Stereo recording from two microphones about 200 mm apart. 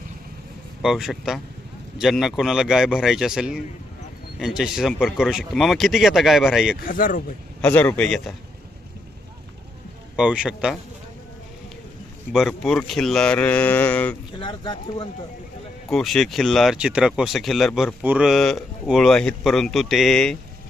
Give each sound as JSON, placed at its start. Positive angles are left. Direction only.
{"t": 0.8, "sound": "speech", "side_deg": 0}
{"t": 6.8, "sound": "speech", "side_deg": 45}
{"t": 7.6, "sound": "speech", "side_deg": 10}
{"t": 10.2, "sound": "speech", "side_deg": -5}
{"t": 12.3, "sound": "speech", "side_deg": 0}
{"t": 14.3, "sound": "speech", "side_deg": 25}
{"t": 15.9, "sound": "speech", "side_deg": 0}